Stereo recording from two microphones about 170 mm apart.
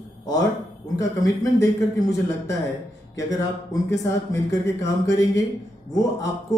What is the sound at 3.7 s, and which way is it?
Speech, 20° left (ahead or behind).